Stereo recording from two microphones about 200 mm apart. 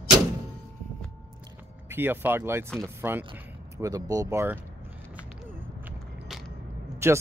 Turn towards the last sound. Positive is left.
turn(degrees=-15)  # may be behind; listen again after turning